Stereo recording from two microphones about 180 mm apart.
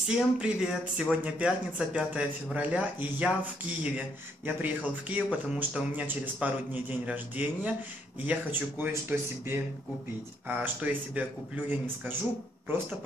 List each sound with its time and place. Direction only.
0.1 s speech: 5° right (ahead or behind)
4.5 s speech: 10° right (ahead or behind)
10.6 s speech: 10° right (ahead or behind)